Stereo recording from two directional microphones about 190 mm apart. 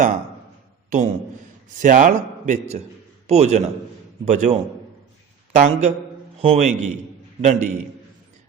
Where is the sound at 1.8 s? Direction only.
40° right (ahead or behind).